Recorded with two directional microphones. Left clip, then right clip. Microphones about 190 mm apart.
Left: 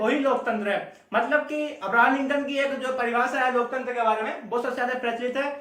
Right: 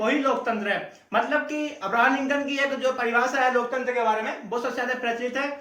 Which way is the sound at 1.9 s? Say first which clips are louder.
Left 1 dB; 5° left (ahead or behind).